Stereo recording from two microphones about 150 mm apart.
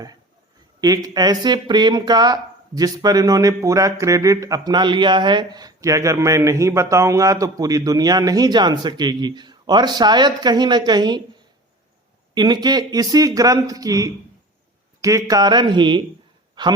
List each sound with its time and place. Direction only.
0.8 s speech: 25° right (ahead or behind)
12.3 s speech: 30° right (ahead or behind)